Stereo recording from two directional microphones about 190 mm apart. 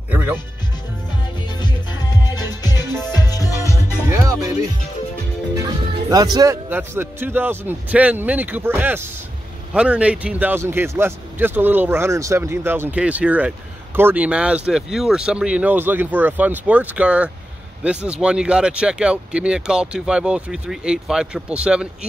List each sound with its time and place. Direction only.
0.1 s a man's voice: 10° right (ahead or behind)
1.6 s music: 20° left (ahead or behind)
4.1 s speech: 15° right (ahead or behind)
5.6 s a man's voice: 20° right (ahead or behind)